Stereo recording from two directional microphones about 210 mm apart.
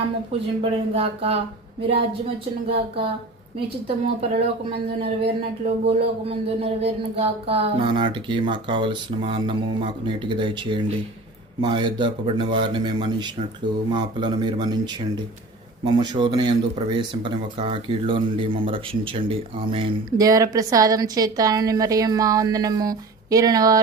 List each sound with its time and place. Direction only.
0.6 s speech: 25° right (ahead or behind)
2.6 s speech: 30° right (ahead or behind)
5.6 s speech: 30° right (ahead or behind)